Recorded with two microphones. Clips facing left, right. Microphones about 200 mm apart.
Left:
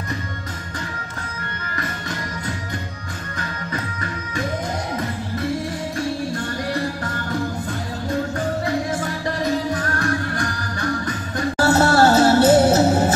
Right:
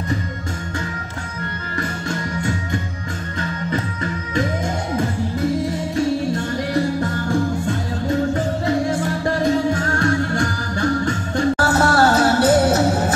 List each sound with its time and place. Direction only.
1.8 s music: 25° right (ahead or behind)
9.4 s music: 25° right (ahead or behind)
11.5 s music: 25° left (ahead or behind)